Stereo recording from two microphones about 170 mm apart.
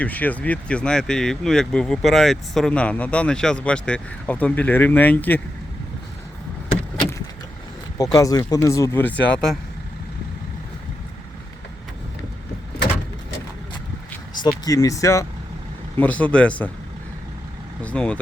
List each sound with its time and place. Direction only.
0.0 s speech: 10° left (ahead or behind)
7.9 s speech: 20° left (ahead or behind)
14.4 s speech: 20° left (ahead or behind)
17.8 s speech: 5° left (ahead or behind)